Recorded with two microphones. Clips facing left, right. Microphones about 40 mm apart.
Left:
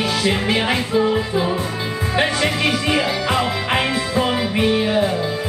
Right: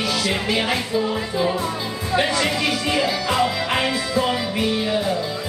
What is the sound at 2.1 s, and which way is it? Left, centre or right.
Music, left.